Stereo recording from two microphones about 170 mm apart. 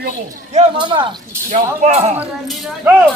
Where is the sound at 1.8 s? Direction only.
45° right (ahead or behind).